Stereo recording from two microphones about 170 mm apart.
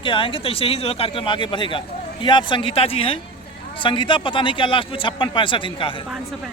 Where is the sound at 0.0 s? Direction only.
30° left (ahead or behind).